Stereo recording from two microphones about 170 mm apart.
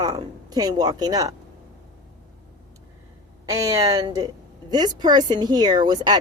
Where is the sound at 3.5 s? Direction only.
20° right (ahead or behind).